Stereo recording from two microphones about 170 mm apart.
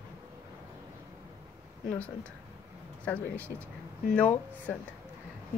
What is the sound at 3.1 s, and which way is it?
Speech, 10° left (ahead or behind).